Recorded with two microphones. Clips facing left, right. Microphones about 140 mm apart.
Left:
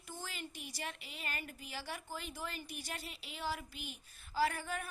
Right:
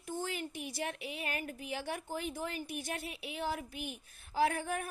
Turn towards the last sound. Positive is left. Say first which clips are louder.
# right 4 dB
turn(degrees=-55)  # may be behind; listen again after turning